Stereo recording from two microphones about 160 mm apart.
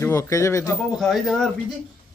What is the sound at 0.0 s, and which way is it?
Speech, 15° left (ahead or behind).